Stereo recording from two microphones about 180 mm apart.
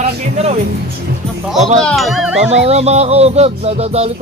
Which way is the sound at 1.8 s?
Centre (ahead or behind).